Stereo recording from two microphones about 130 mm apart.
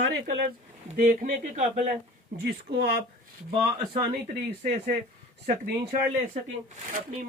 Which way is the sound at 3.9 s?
70° right (ahead or behind).